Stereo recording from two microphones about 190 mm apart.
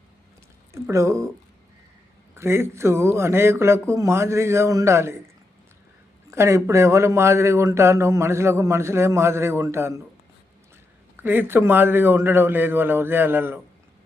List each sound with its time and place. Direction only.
0.7 s a man's voice: 15° right (ahead or behind)
2.3 s a man's voice: 15° right (ahead or behind)
6.3 s a man's voice: 15° right (ahead or behind)
11.2 s a man's voice: 10° right (ahead or behind)